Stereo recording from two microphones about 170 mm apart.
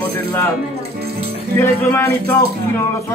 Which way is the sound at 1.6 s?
15° left (ahead or behind).